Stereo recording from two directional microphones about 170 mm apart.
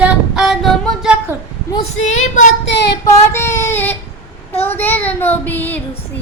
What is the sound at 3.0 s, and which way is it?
Child singing, 15° left (ahead or behind).